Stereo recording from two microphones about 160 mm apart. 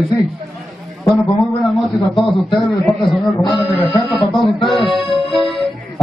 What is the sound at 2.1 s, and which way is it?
Speech, centre (ahead or behind).